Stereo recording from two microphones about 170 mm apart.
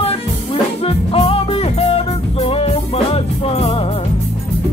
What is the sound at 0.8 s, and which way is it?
Music, 35° left (ahead or behind).